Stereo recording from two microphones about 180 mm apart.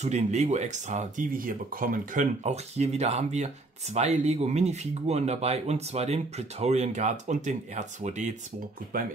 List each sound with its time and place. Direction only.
0.0 s speech: 40° right (ahead or behind)
8.9 s speech: 50° right (ahead or behind)